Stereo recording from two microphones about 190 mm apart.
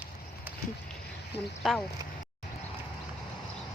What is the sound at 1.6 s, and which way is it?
Speech, centre (ahead or behind).